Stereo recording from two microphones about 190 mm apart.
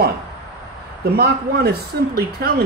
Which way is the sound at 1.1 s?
55° right (ahead or behind).